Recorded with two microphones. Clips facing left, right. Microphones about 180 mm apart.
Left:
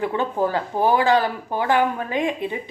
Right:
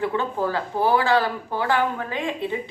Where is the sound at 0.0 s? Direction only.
15° left (ahead or behind).